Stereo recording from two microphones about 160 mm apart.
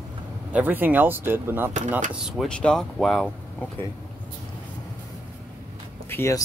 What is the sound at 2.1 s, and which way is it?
Speech, centre (ahead or behind).